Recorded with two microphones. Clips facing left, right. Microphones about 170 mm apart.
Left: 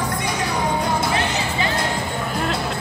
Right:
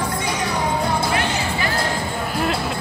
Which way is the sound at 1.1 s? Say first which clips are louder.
Even; 25° left (ahead or behind).